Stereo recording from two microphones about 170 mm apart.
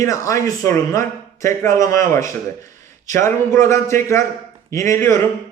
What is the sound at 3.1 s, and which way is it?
Speech, 15° left (ahead or behind).